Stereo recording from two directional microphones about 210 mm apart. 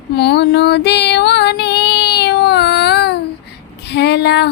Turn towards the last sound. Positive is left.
turn(degrees=50)  # may be behind; listen again after turning